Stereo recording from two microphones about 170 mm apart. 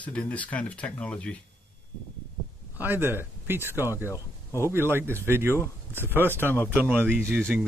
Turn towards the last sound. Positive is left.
turn(degrees=-15)  # may be behind; listen again after turning